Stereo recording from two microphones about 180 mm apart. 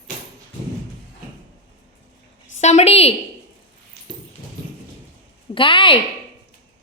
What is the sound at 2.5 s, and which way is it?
Speech, 40° left (ahead or behind).